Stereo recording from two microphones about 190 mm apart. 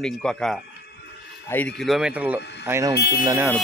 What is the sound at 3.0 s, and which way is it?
Speech, 55° left (ahead or behind).